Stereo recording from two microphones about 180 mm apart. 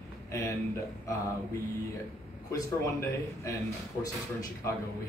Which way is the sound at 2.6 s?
15° left (ahead or behind).